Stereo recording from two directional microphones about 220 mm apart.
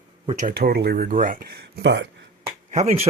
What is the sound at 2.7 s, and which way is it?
Speech, 30° right (ahead or behind).